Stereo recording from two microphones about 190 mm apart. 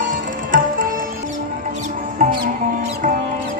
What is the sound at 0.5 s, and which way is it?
Tabla, 45° right (ahead or behind).